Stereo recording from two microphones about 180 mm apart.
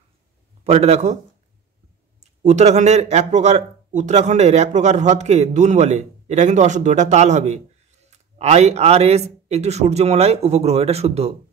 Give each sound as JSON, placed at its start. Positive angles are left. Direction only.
{"t": 0.7, "sound": "speech", "side_deg": -35}
{"t": 2.1, "sound": "speech", "side_deg": -40}